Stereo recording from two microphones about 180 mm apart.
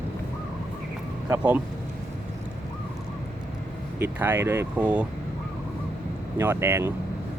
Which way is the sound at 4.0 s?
10° right (ahead or behind).